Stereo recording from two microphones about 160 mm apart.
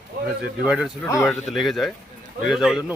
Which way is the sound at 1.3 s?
Centre (ahead or behind).